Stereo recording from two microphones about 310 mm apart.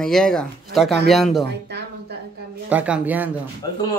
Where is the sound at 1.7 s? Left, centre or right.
Right.